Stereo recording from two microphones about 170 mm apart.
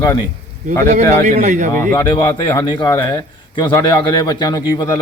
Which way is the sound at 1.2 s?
45° right (ahead or behind).